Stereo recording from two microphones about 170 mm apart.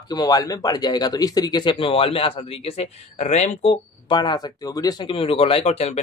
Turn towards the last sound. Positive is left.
turn(degrees=40)  # may be behind; listen again after turning